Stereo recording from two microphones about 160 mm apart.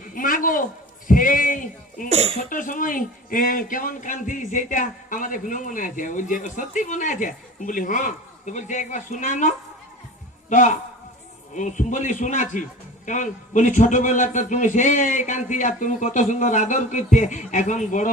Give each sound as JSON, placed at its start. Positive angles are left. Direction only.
{"t": 0.1, "sound": "a sound", "side_deg": 60}
{"t": 1.0, "sound": "speech", "side_deg": 55}
{"t": 2.0, "sound": "speech", "side_deg": -40}
{"t": 2.4, "sound": "speech", "side_deg": 55}